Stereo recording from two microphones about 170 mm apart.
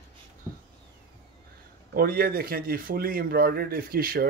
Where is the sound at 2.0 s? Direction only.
60° right (ahead or behind).